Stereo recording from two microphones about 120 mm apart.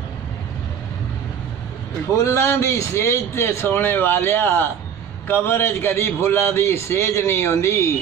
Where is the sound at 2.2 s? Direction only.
25° left (ahead or behind).